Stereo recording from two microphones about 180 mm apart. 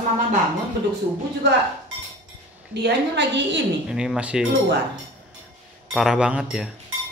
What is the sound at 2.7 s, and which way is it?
Speech, 70° right (ahead or behind).